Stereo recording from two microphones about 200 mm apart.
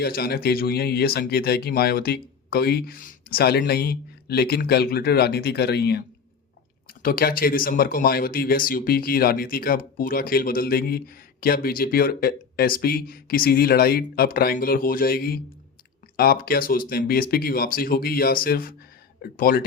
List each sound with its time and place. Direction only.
0.0 s speech: 50° left (ahead or behind)
7.0 s speech: 45° left (ahead or behind)